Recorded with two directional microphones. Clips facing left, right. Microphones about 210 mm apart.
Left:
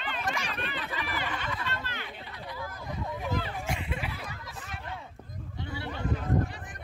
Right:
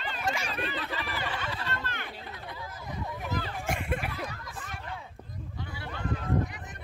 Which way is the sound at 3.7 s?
50° right (ahead or behind).